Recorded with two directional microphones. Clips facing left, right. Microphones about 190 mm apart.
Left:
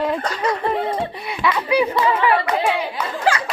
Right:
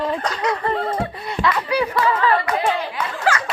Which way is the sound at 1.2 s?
5° left (ahead or behind).